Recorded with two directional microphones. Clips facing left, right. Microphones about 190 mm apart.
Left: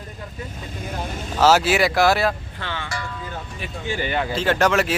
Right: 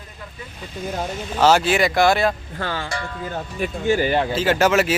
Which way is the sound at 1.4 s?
5° left (ahead or behind).